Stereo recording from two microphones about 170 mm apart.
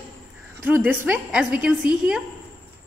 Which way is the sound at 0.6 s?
10° right (ahead or behind).